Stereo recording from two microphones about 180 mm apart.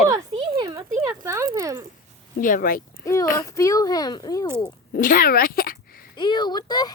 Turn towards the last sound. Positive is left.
turn(degrees=25)  # may be behind; listen again after turning